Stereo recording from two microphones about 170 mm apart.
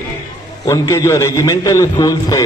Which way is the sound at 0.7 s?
20° left (ahead or behind).